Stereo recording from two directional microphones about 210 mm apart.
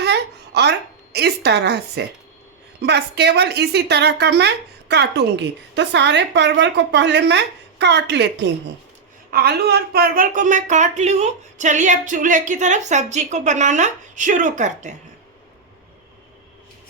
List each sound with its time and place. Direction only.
0.0 s a woman's voice: 55° right (ahead or behind); by 14.9 s 35° right (ahead or behind)